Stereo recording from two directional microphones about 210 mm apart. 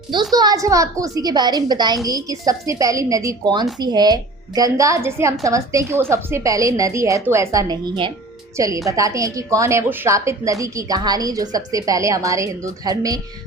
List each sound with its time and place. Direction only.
0.3 s a woman's voice: 15° right (ahead or behind)